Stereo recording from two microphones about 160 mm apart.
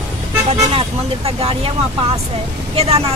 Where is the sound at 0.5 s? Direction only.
35° right (ahead or behind).